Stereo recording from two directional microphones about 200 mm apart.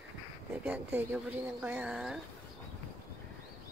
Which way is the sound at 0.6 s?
5° right (ahead or behind).